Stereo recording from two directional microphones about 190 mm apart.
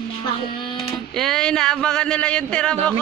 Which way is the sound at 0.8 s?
Centre (ahead or behind).